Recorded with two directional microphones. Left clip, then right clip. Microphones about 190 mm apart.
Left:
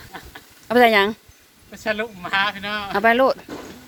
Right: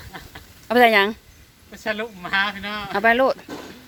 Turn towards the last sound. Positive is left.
turn(degrees=5)  # may be behind; listen again after turning